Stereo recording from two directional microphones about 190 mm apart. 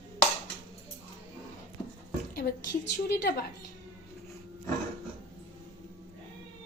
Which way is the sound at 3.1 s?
55° left (ahead or behind).